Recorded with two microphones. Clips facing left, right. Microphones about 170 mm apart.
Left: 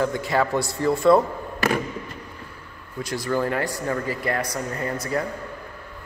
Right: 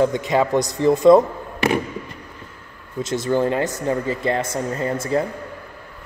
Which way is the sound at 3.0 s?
25° right (ahead or behind).